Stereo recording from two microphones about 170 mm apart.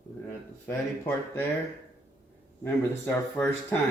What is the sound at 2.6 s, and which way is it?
A man's voice, 10° left (ahead or behind).